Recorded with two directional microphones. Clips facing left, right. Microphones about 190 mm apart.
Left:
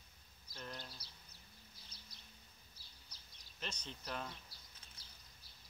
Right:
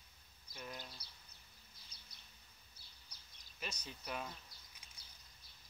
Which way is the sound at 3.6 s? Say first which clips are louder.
Even; 10° right (ahead or behind).